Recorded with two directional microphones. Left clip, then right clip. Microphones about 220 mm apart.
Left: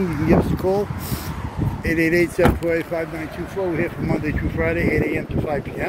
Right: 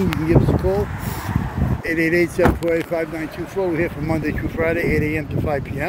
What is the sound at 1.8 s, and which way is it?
Speech, 10° left (ahead or behind).